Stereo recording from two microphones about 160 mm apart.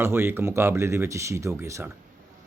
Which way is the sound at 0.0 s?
15° right (ahead or behind).